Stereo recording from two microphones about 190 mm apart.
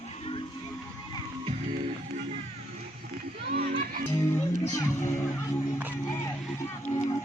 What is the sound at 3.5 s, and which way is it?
Music, 50° right (ahead or behind).